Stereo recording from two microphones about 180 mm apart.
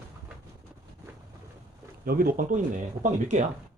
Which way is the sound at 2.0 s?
55° right (ahead or behind).